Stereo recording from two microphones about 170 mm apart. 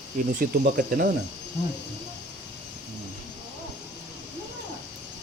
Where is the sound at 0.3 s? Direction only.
55° right (ahead or behind).